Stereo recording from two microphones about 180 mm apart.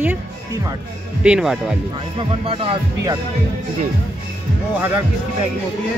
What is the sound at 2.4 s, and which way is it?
Speech, 30° right (ahead or behind).